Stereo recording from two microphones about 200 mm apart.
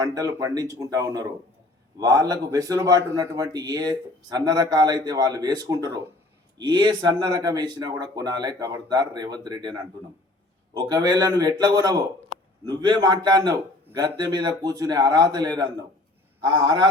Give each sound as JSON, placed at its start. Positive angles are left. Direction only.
{"t": 0.0, "sound": "speech", "side_deg": -15}